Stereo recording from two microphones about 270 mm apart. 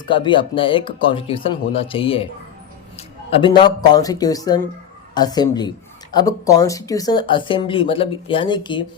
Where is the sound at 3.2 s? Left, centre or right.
Centre.